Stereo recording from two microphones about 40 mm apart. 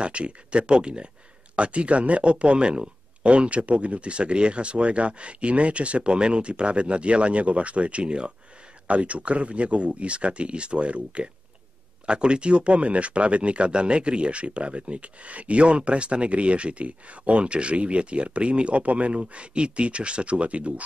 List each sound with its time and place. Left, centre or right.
0.0 s speech: right